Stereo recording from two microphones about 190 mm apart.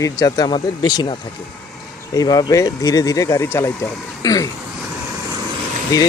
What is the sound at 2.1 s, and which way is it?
Speech, 20° left (ahead or behind).